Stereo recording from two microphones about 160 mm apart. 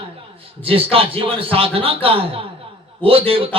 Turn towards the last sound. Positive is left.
turn(degrees=-35)  # may be behind; listen again after turning